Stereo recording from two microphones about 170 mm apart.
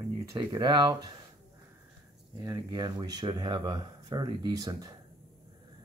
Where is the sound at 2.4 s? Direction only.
20° right (ahead or behind).